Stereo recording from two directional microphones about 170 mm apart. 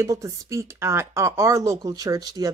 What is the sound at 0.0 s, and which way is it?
Speech, 20° right (ahead or behind).